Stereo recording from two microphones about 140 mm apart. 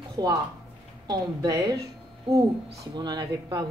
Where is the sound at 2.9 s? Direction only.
30° right (ahead or behind).